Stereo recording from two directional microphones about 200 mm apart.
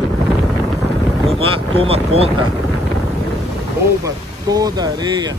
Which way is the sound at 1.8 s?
30° right (ahead or behind).